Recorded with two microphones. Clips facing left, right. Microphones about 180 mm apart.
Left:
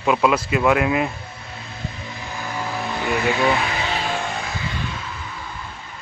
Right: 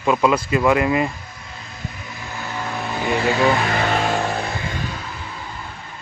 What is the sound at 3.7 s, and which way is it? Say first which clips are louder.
Music: right 5 dB; 50° right (ahead or behind).